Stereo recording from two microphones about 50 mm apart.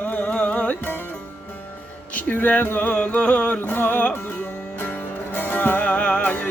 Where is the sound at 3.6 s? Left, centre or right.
Left.